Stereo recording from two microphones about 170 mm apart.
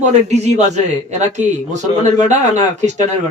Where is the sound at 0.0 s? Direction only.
45° right (ahead or behind).